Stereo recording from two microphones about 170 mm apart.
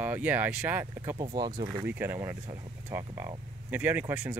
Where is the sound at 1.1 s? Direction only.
30° right (ahead or behind).